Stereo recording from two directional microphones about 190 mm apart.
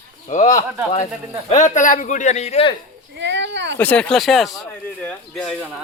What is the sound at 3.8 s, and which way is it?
Speech, 5° left (ahead or behind).